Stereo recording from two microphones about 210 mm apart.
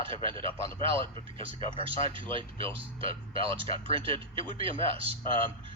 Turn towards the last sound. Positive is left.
turn(degrees=-25)  # may be behind; listen again after turning